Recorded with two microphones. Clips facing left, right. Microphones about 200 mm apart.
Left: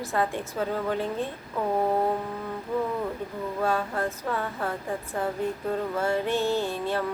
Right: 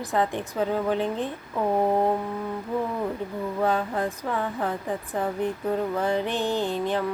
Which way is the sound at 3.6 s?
15° right (ahead or behind).